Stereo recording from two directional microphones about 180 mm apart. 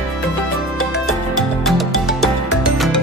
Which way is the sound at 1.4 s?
Centre (ahead or behind).